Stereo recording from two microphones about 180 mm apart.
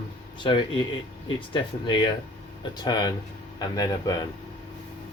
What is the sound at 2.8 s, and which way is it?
Speech, 20° left (ahead or behind).